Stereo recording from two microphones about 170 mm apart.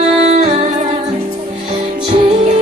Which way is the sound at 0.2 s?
40° right (ahead or behind).